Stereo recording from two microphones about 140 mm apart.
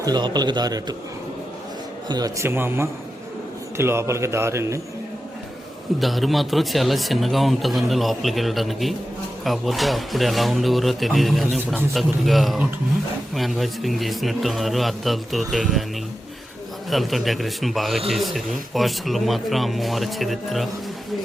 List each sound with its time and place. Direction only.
0.0 s a man's voice: 30° right (ahead or behind)
2.0 s a man's voice: 25° right (ahead or behind)
6.0 s speech: centre (ahead or behind)
16.9 s speech: centre (ahead or behind)